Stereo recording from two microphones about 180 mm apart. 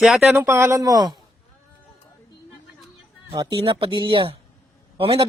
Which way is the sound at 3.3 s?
25° right (ahead or behind).